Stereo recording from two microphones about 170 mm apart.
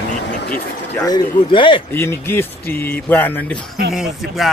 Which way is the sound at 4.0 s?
Centre (ahead or behind).